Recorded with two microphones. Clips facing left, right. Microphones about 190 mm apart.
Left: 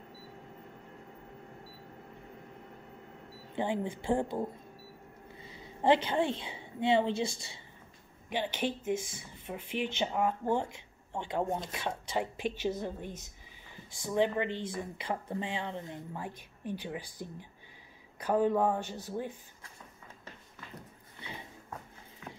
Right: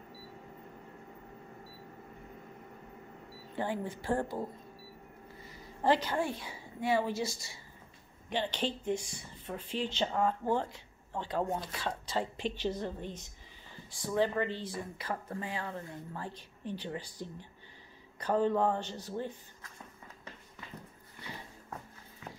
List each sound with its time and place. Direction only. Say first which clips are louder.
3.5 s a woman's voice: left 3 dB; 20° left (ahead or behind)
8.3 s speech: left 1 dB; 10° left (ahead or behind)
8.9 s speech: left 2 dB; 50° left (ahead or behind)
9.5 s speech: left 1 dB; 10° left (ahead or behind)